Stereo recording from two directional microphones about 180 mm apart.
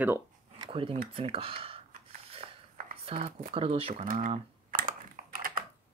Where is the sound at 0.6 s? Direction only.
30° right (ahead or behind).